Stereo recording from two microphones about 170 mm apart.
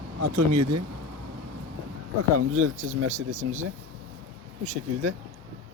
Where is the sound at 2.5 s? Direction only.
50° right (ahead or behind).